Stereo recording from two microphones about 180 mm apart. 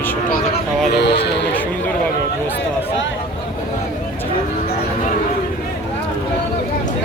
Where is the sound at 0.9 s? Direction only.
70° left (ahead or behind).